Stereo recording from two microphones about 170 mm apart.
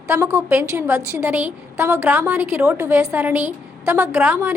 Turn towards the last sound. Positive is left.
turn(degrees=-10)  # may be behind; listen again after turning